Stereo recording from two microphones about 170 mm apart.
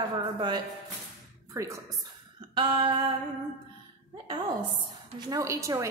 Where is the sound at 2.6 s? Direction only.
30° right (ahead or behind).